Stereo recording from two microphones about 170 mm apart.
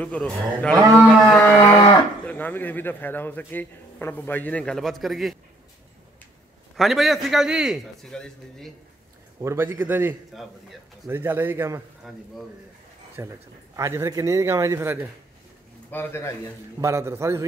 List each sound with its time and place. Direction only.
0.0 s a man's voice: 5° left (ahead or behind)
6.8 s a man's voice: centre (ahead or behind)
9.4 s a man's voice: 15° right (ahead or behind)
10.3 s a man's voice: centre (ahead or behind)
11.1 s a man's voice: 10° right (ahead or behind)
13.2 s a man's voice: 15° right (ahead or behind)
15.9 s a man's voice: 15° left (ahead or behind)
16.8 s a man's voice: 15° right (ahead or behind)